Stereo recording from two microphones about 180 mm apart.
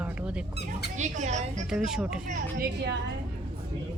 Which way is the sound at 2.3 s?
60° right (ahead or behind).